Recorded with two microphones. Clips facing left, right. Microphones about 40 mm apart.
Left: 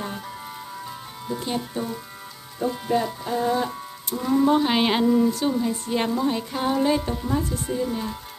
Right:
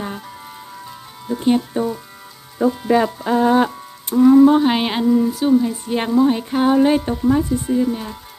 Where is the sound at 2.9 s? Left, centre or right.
Right.